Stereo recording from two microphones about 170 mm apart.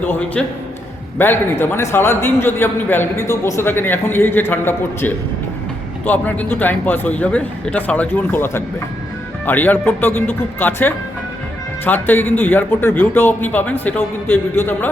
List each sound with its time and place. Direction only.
0.0 s a man's voice: 10° left (ahead or behind)